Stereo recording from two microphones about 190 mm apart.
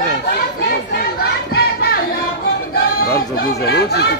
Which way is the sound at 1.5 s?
55° left (ahead or behind).